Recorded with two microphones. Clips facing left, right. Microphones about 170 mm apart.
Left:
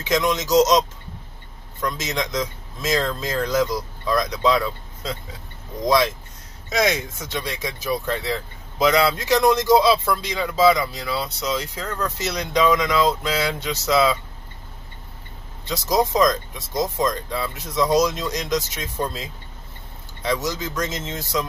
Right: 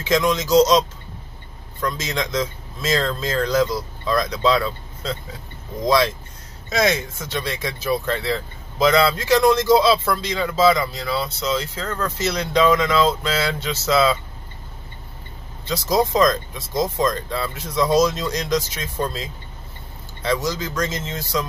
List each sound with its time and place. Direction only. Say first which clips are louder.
0.0 s a man's voice: right 2 dB; 20° left (ahead or behind)
15.6 s speech: right 1 dB; 20° left (ahead or behind)
20.3 s a man's voice: right 2 dB; 20° left (ahead or behind)